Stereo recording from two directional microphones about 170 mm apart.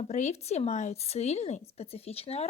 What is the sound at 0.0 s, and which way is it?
Speech, 45° left (ahead or behind).